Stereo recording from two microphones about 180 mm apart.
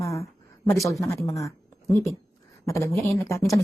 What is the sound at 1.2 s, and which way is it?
Speech, 15° left (ahead or behind).